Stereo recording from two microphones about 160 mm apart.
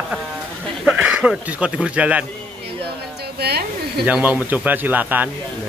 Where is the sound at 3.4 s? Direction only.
85° right.